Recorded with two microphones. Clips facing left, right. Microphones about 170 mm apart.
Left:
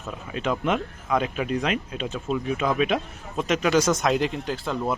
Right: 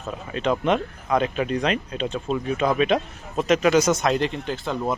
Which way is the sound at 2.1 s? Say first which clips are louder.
Even; 35° right (ahead or behind).